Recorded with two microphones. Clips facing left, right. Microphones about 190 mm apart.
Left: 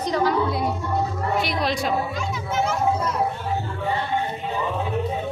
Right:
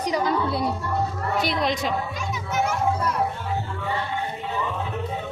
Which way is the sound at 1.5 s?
20° right (ahead or behind).